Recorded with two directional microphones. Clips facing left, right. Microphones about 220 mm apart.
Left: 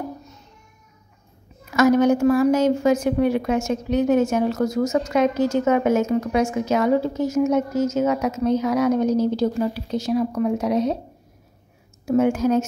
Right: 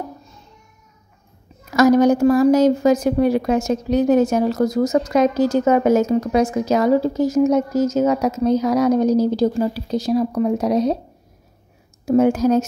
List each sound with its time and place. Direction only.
1.7 s a woman's voice: 35° right (ahead or behind)
12.1 s a woman's voice: 35° right (ahead or behind)